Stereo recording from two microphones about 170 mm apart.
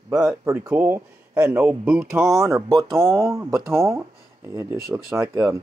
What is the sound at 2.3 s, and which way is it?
Speech, 20° right (ahead or behind).